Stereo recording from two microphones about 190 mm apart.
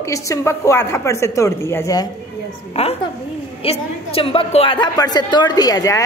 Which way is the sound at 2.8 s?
35° left (ahead or behind).